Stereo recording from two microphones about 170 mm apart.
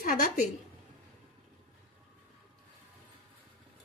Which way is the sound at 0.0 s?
55° left (ahead or behind).